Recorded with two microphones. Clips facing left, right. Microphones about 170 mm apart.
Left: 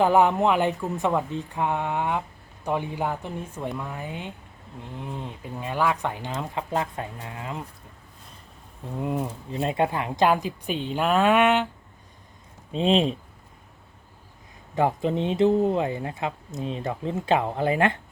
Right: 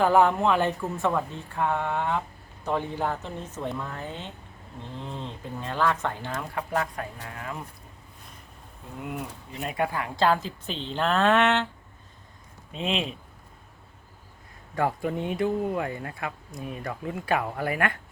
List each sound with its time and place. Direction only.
0.0 s speech: 15° left (ahead or behind)
9.0 s speech: 30° left (ahead or behind); by 11.7 s 10° left (ahead or behind)
12.7 s speech: 35° left (ahead or behind)
14.8 s speech: 20° left (ahead or behind)